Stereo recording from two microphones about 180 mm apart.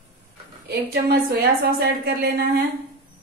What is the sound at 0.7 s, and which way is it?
A woman's voice, 55° right (ahead or behind).